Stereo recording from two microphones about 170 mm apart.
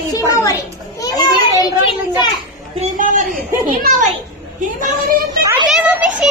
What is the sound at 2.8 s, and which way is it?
Speech, 50° right (ahead or behind).